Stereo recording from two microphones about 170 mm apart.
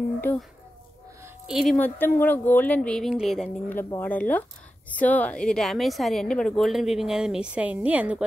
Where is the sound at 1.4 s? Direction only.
Centre (ahead or behind).